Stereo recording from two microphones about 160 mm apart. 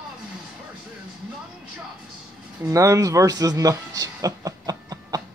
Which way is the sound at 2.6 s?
20° right (ahead or behind).